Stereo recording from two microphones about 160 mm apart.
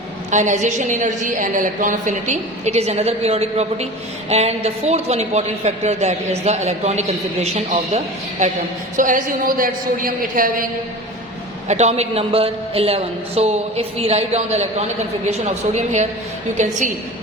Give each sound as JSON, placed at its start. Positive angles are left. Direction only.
{"t": 0.3, "sound": "a woman's voice", "side_deg": -50}
{"t": 9.0, "sound": "a woman's voice", "side_deg": -55}
{"t": 11.7, "sound": "a man's voice", "side_deg": -45}